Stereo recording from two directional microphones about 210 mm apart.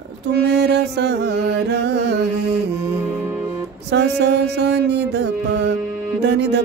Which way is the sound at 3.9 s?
55° right (ahead or behind).